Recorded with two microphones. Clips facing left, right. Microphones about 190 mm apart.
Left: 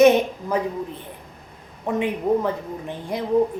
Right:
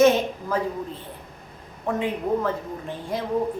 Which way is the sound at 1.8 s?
15° left (ahead or behind).